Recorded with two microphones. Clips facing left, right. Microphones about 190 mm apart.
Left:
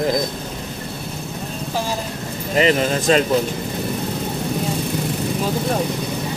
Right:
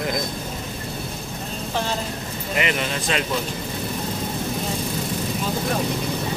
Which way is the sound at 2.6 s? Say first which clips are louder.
Left 8 dB; 35° left (ahead or behind).